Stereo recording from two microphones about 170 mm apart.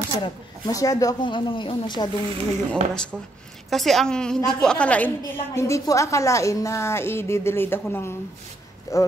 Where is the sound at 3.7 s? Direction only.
Centre (ahead or behind).